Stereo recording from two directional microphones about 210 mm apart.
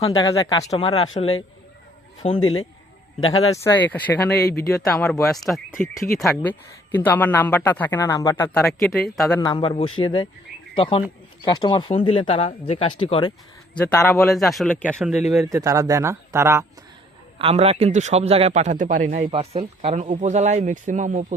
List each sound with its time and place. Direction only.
0.0 s speech: 25° left (ahead or behind)
0.3 s speech: 15° left (ahead or behind)
0.7 s speech: 25° left (ahead or behind)
3.5 s speech: 10° left (ahead or behind)
4.4 s speech: 50° left (ahead or behind)
4.8 s speech: centre (ahead or behind)
8.6 s speech: centre (ahead or behind)
9.4 s speech: 20° left (ahead or behind)
13.7 s speech: 5° left (ahead or behind)
15.4 s speech: 15° right (ahead or behind)
17.3 s speech: 30° right (ahead or behind)
19.3 s speech: 30° right (ahead or behind)